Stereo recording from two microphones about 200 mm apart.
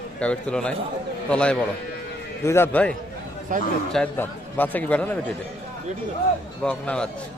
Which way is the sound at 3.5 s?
40° right (ahead or behind).